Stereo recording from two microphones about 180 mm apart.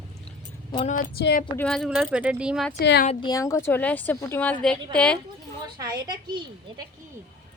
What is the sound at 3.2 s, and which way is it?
A woman's voice, 20° left (ahead or behind).